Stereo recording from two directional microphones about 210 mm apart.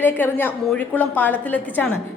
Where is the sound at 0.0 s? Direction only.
10° left (ahead or behind).